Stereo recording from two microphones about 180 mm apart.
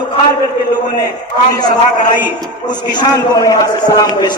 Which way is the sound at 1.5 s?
20° left (ahead or behind).